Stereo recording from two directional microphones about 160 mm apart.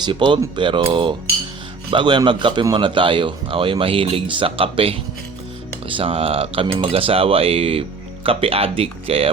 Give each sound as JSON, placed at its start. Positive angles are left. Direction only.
{"t": 0.0, "sound": "speech", "side_deg": -30}